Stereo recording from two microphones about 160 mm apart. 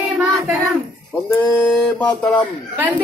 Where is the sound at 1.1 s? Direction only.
10° left (ahead or behind).